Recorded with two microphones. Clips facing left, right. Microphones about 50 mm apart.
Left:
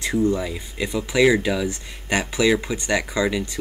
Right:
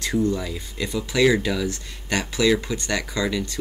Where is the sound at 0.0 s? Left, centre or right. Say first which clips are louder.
Left 2 dB; left.